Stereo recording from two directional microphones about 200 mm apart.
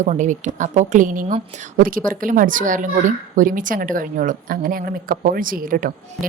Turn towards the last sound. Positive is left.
turn(degrees=-45)  # may be behind; listen again after turning